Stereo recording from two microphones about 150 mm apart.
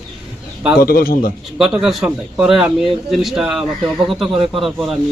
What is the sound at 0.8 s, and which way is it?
Speech, 85° left.